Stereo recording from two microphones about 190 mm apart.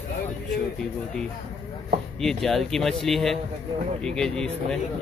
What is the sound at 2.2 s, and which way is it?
Speech, centre (ahead or behind).